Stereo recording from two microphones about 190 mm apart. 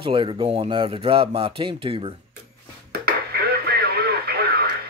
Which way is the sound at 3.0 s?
55° right (ahead or behind).